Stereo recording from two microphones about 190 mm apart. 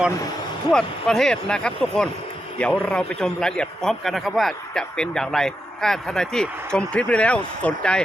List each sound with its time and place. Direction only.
0.7 s a man's voice: 5° left (ahead or behind)